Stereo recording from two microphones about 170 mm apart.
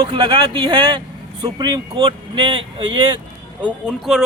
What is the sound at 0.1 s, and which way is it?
Speech, 30° right (ahead or behind).